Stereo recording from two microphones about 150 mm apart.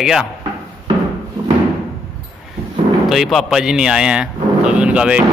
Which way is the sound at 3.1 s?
Centre (ahead or behind).